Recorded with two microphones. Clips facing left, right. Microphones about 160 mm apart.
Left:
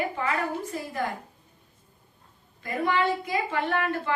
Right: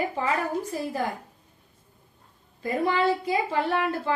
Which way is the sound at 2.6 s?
35° right (ahead or behind).